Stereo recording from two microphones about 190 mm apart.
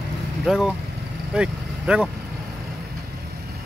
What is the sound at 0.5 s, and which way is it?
Speech, centre (ahead or behind).